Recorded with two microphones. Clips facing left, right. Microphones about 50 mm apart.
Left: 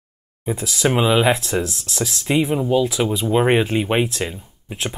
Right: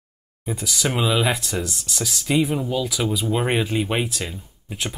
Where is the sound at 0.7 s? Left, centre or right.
Centre.